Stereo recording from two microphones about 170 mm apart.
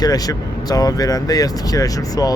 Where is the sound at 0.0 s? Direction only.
20° left (ahead or behind).